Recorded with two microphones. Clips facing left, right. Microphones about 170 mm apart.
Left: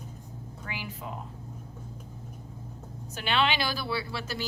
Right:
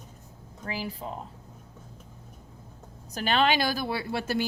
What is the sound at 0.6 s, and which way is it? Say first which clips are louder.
Speech: right 5 dB; 35° right (ahead or behind).